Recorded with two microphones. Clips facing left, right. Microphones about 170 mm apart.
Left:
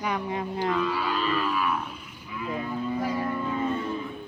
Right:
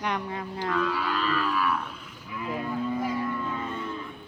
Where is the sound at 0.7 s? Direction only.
5° left (ahead or behind).